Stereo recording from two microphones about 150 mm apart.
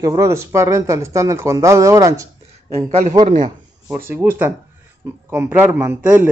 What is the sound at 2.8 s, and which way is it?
Speech, 50° right (ahead or behind).